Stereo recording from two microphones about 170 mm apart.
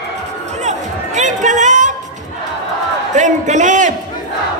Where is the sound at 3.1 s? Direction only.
45° right (ahead or behind).